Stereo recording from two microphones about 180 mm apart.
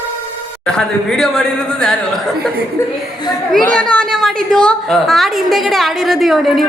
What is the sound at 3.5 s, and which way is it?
A woman's voice, 5° left (ahead or behind).